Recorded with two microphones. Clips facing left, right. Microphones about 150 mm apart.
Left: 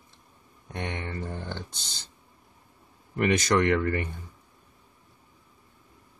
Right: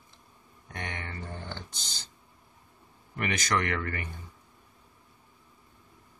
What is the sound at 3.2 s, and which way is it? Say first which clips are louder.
Speech: left 7 dB; 30° left (ahead or behind).